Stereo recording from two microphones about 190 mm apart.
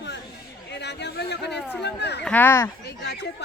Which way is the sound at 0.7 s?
65° left (ahead or behind).